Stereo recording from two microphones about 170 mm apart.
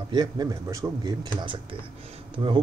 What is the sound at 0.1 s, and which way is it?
Speech, 25° right (ahead or behind).